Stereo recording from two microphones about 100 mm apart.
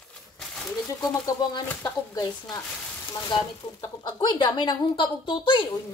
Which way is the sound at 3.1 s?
50° left (ahead or behind).